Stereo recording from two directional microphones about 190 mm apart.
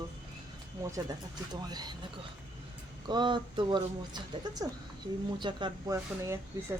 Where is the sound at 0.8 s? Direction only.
15° right (ahead or behind).